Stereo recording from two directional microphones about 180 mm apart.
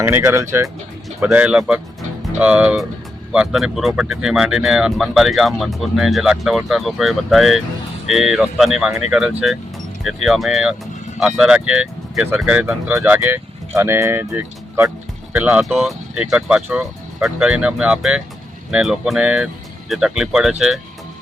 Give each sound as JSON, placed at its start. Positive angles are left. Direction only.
{"t": 0.0, "sound": "speech", "side_deg": -15}